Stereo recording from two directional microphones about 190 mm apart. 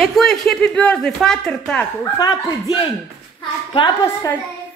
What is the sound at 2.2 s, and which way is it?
Speech, 20° left (ahead or behind).